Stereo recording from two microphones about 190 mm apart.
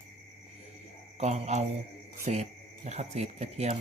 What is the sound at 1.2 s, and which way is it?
Speech, 35° right (ahead or behind).